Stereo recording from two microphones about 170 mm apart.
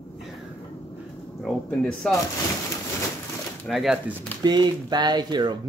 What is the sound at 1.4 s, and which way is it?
Speech, 5° left (ahead or behind).